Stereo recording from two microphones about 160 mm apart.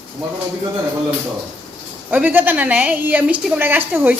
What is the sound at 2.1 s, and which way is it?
A woman's voice, 10° right (ahead or behind).